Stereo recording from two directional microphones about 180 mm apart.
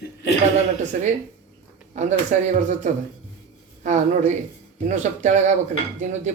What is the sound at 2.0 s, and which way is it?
Speech, 40° right (ahead or behind).